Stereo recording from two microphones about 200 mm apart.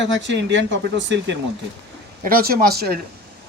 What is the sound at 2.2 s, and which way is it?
Speech, 45° right (ahead or behind).